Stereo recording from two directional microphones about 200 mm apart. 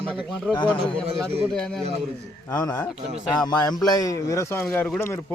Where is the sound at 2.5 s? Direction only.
15° left (ahead or behind).